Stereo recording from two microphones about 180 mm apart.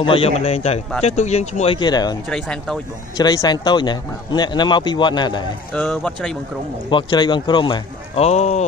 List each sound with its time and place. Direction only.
0.0 s a man's voice: 30° left (ahead or behind)
1.8 s a man's voice: 20° left (ahead or behind)
2.2 s speech: 5° left (ahead or behind)
3.2 s a man's voice: 20° left (ahead or behind)
5.7 s speech: 5° left (ahead or behind)
6.9 s a man's voice: 25° left (ahead or behind)